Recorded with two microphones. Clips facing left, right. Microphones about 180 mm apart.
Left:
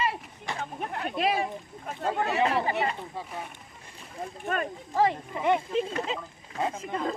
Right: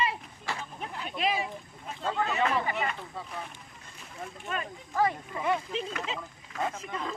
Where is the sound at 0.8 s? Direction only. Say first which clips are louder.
Left 5 dB; 55° left (ahead or behind).